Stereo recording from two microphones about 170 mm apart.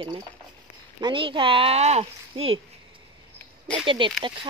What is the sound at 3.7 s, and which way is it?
Speech, 30° right (ahead or behind).